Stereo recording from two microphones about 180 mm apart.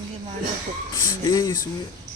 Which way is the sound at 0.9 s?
20° left (ahead or behind).